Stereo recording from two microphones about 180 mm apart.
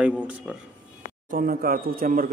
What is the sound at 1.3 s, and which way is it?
Speech, 55° right (ahead or behind).